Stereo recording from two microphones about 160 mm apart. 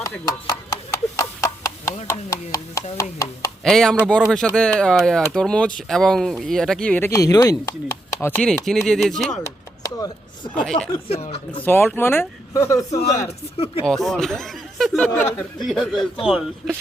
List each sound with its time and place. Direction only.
0.3 s a sound: 20° left (ahead or behind)
2.0 s chopping: 20° left (ahead or behind)
3.6 s speech: 5° left (ahead or behind); by 7.7 s 20° left (ahead or behind)
8.2 s speech: 10° left (ahead or behind)
9.4 s chop: 20° left (ahead or behind)
10.5 s speech: 10° left (ahead or behind)
11.1 s speech: 40° left (ahead or behind)
11.6 s speech: 10° left (ahead or behind)
13.8 s speech: 5° left (ahead or behind)
15.7 s speech: centre (ahead or behind)